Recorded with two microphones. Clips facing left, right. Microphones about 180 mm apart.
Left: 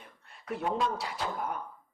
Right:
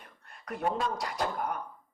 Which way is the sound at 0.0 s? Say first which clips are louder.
Right 1 dB; 50° right (ahead or behind).